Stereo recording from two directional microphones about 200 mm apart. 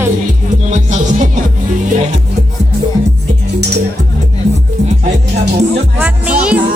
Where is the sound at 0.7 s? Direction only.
40° right (ahead or behind).